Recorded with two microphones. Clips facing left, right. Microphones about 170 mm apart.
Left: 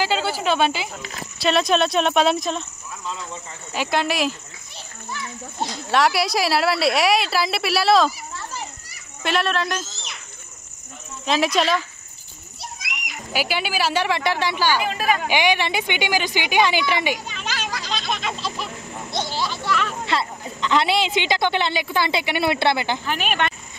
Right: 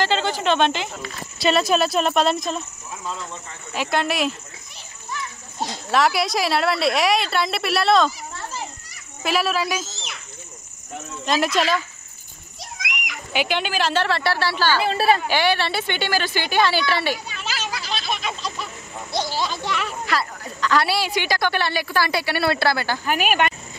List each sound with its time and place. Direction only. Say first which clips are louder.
0.0 s a woman's voice: right 1 dB; 10° left (ahead or behind)
3.7 s a woman's voice: even; centre (ahead or behind)
5.9 s a woman's voice: even; centre (ahead or behind)
9.2 s a woman's voice: even; 5° right (ahead or behind)
11.2 s a woman's voice: left 1 dB; centre (ahead or behind)
12.7 s children playing: right 7 dB; 90° right
13.3 s a woman's voice: right 1 dB; 5° left (ahead or behind)
14.9 s a woman's voice: right 3 dB; 35° right (ahead or behind)
15.2 s a woman's voice: even; 15° left (ahead or behind)
17.6 s a sound: even; 10° right (ahead or behind)
19.3 s a sound: right 1 dB; 20° right (ahead or behind)
20.1 s a woman's voice: left 1 dB; 25° left (ahead or behind)
23.0 s speech: right 3 dB; 5° right (ahead or behind)